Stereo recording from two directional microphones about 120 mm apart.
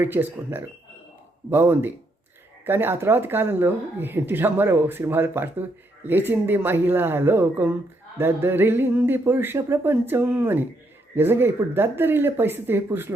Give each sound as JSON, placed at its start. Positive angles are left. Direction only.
{"t": 0.0, "sound": "speech", "side_deg": -15}